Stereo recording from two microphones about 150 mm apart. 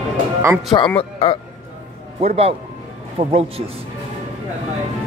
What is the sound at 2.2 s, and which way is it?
A man's voice, 40° right (ahead or behind).